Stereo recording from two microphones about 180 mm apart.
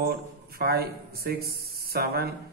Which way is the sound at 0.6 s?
60° right (ahead or behind).